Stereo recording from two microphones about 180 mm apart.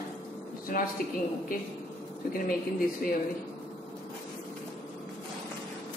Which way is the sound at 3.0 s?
50° left (ahead or behind).